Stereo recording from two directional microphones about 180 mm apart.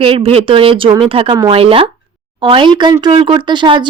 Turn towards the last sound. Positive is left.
turn(degrees=-25)  # may be behind; listen again after turning